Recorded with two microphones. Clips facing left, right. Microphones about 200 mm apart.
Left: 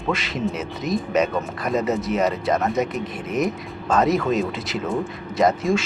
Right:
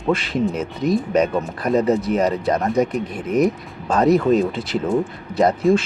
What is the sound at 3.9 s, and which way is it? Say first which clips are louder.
Speech: right 4 dB; 35° right (ahead or behind).